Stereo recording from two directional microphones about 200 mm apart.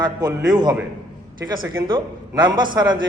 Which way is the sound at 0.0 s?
20° right (ahead or behind).